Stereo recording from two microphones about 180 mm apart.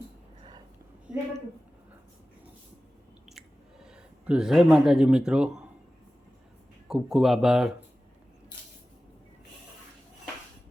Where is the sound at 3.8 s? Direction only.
5° right (ahead or behind).